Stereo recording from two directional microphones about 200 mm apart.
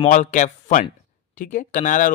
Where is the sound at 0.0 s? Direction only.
40° left (ahead or behind).